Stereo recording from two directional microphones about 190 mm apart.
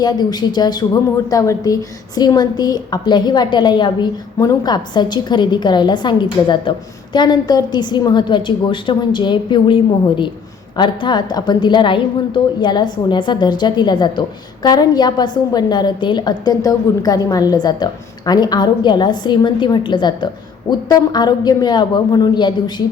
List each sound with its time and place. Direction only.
0.0 s a woman's voice: 20° left (ahead or behind)